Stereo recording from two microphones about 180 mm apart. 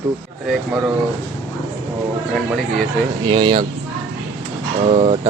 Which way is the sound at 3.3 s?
25° right (ahead or behind).